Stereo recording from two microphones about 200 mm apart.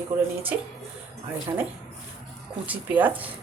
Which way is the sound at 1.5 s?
15° right (ahead or behind).